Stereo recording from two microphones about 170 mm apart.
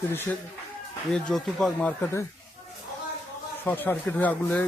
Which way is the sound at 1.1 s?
5° left (ahead or behind).